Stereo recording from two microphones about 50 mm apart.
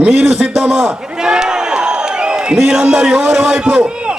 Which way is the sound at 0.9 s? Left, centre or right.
Centre.